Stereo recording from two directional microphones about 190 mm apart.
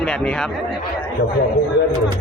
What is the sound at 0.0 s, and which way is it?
Speech, 5° left (ahead or behind).